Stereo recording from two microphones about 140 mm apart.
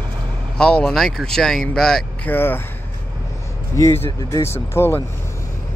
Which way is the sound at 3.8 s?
20° left (ahead or behind).